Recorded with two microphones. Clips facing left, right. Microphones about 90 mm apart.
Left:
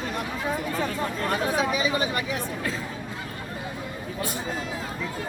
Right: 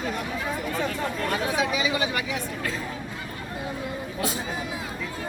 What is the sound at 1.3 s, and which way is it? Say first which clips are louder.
Speech: left 2 dB; 35° left (ahead or behind).